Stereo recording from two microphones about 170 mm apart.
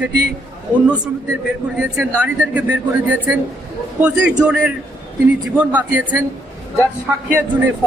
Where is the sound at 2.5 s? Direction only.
10° right (ahead or behind).